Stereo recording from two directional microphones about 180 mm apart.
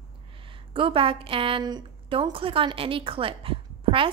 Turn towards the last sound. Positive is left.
turn(degrees=-30)  # may be behind; listen again after turning